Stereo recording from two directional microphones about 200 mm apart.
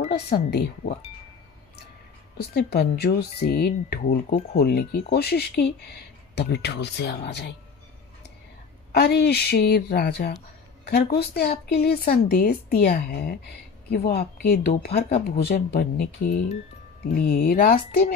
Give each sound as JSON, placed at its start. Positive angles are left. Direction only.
{"t": 0.1, "sound": "speech", "side_deg": 55}
{"t": 2.3, "sound": "speech", "side_deg": 55}
{"t": 8.9, "sound": "a woman's voice", "side_deg": 55}
{"t": 16.3, "sound": "speech", "side_deg": 35}
{"t": 17.1, "sound": "speech", "side_deg": 45}